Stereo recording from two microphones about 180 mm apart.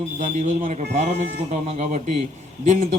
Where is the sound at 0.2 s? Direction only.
45° right (ahead or behind).